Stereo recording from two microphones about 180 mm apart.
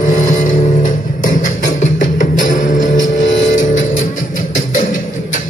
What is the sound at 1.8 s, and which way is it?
Music, 45° left (ahead or behind).